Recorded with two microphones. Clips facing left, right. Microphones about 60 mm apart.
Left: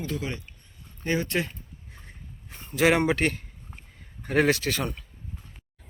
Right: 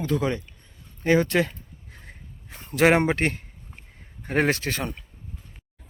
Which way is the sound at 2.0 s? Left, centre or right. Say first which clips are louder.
Right 2 dB; right.